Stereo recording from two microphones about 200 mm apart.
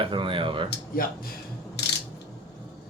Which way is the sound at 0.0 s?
25° right (ahead or behind).